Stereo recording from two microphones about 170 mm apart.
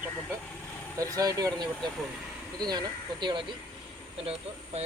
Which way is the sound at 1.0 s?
20° right (ahead or behind).